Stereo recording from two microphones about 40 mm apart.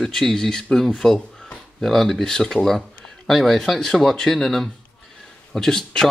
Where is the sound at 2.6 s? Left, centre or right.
Centre.